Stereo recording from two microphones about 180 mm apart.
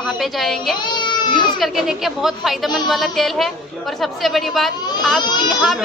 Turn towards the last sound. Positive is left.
turn(degrees=0)  # may be behind; listen again after turning